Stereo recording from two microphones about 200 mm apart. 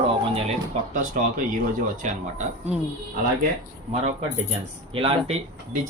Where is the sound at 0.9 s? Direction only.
40° right (ahead or behind).